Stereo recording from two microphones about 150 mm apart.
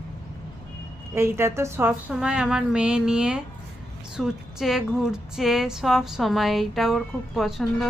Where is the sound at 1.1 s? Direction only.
15° right (ahead or behind).